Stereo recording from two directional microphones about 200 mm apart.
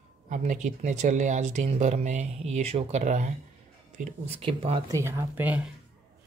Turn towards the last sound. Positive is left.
turn(degrees=-5)  # may be behind; listen again after turning